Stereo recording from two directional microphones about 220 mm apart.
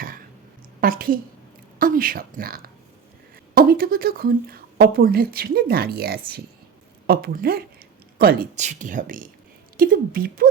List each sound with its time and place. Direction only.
0.8 s speech: 40° right (ahead or behind)